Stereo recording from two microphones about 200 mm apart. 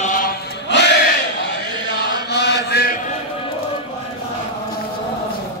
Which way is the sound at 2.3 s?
55° left (ahead or behind).